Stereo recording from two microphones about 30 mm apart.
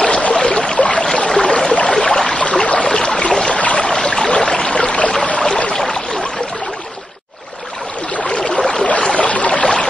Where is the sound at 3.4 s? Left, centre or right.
Left.